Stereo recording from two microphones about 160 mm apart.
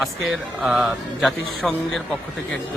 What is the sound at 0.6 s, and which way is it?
A man's voice, 5° right (ahead or behind).